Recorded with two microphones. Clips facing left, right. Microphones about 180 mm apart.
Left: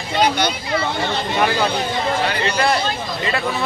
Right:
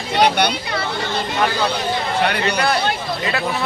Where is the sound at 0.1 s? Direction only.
65° right (ahead or behind).